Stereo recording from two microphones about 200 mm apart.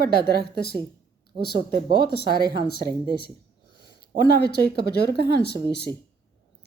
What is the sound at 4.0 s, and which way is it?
A woman's voice, 55° left (ahead or behind).